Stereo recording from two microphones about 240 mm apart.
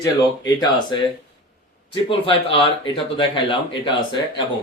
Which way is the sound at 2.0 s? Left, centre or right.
Left.